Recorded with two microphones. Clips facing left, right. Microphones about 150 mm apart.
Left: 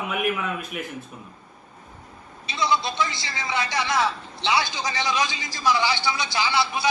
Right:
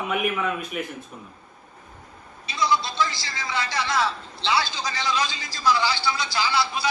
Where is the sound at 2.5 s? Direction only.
20° left (ahead or behind).